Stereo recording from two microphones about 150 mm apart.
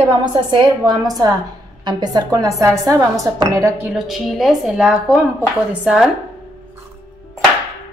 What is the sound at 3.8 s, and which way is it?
A woman's voice, centre (ahead or behind).